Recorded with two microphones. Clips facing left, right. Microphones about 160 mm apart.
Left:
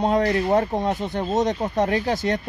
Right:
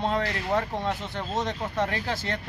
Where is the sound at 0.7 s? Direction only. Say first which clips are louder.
Left 6 dB; 20° left (ahead or behind).